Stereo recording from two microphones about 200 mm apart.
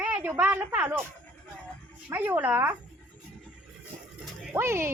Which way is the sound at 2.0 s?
10° right (ahead or behind).